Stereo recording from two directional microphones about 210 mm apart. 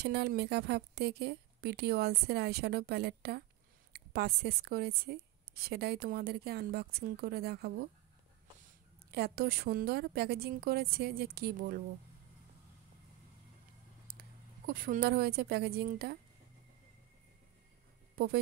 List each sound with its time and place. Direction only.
0.0 s a woman's voice: 50° right (ahead or behind)
9.1 s a woman's voice: 50° right (ahead or behind)
14.7 s a woman's voice: 45° right (ahead or behind)
18.1 s speech: 45° right (ahead or behind)